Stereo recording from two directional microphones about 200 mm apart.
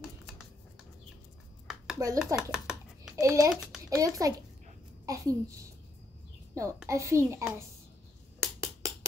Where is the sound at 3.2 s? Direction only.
15° right (ahead or behind).